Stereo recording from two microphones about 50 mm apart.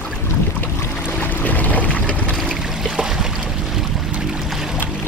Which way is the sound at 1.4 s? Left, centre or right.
Left.